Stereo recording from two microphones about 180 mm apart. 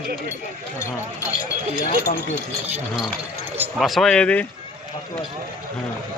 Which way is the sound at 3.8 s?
Centre (ahead or behind).